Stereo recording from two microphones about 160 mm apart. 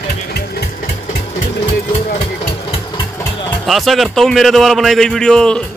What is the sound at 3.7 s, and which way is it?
A man's voice, centre (ahead or behind).